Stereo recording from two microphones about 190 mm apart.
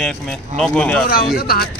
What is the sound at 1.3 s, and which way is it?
Speech, 55° left (ahead or behind).